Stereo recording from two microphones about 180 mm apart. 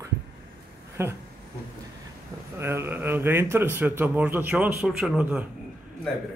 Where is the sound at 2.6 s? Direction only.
15° right (ahead or behind).